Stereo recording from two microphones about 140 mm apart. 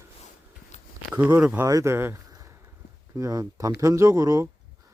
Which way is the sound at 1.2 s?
10° right (ahead or behind).